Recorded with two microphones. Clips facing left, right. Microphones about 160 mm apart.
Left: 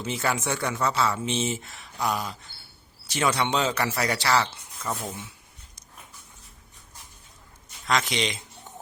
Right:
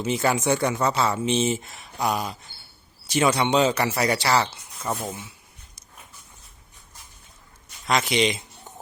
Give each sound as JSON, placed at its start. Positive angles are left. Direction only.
{"t": 0.0, "sound": "speech", "side_deg": -15}
{"t": 7.9, "sound": "speech", "side_deg": -10}